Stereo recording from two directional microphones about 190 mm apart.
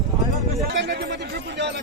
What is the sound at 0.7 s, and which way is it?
Speech, 65° right (ahead or behind).